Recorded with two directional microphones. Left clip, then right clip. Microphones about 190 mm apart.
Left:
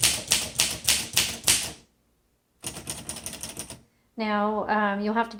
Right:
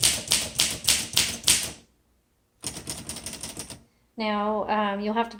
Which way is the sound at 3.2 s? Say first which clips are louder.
Even; 10° right (ahead or behind).